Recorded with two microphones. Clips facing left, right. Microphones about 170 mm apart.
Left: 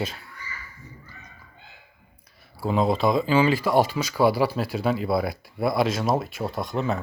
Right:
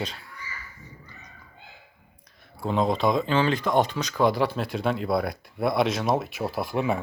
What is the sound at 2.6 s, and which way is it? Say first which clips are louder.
Speech: left 1 dB; 5° left (ahead or behind).